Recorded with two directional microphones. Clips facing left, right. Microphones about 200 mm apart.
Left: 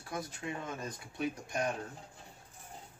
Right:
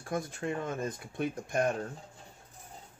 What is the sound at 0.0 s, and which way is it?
Speech, 50° right (ahead or behind).